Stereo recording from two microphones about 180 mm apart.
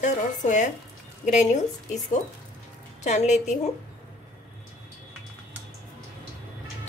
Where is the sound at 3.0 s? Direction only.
40° left (ahead or behind).